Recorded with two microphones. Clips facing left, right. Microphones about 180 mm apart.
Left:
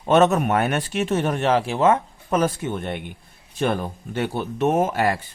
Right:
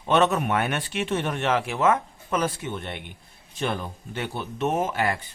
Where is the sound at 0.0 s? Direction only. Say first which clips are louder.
Left 4 dB; 45° left (ahead or behind).